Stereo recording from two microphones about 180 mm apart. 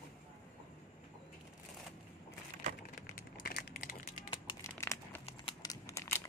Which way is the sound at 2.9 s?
50° left (ahead or behind).